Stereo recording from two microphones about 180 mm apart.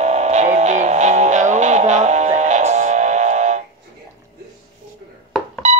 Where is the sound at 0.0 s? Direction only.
40° right (ahead or behind).